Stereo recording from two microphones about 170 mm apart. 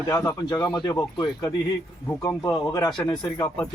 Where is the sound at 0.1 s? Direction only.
20° left (ahead or behind).